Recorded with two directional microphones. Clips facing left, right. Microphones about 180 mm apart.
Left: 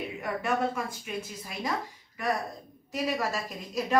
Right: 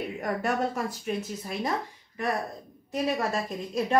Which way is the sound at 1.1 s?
40° right (ahead or behind).